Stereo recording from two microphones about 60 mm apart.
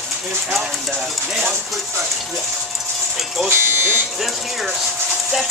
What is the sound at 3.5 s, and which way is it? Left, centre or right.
Buzzer, right.